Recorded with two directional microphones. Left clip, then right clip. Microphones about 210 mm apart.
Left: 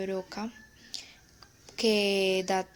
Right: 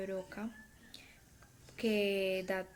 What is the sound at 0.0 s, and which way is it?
Speech, 30° left (ahead or behind).